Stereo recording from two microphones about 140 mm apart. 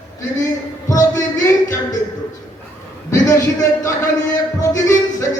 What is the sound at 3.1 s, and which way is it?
Speech, 20° left (ahead or behind).